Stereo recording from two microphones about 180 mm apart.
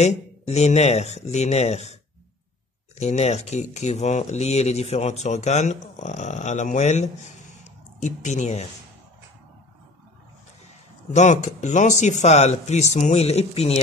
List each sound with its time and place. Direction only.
0.0 s speech: 35° left (ahead or behind)
3.0 s speech: 35° left (ahead or behind)
11.1 s speech: 40° left (ahead or behind)